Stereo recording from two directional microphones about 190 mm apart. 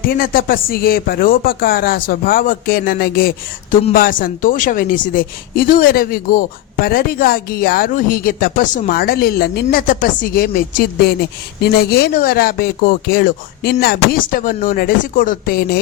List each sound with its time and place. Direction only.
0.0 s speech: 50° left (ahead or behind)